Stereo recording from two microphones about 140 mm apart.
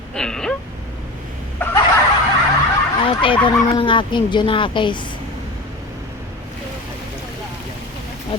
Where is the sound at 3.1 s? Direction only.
40° left (ahead or behind).